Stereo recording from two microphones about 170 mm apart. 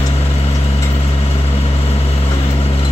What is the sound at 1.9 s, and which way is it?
Vehicle, 35° left (ahead or behind).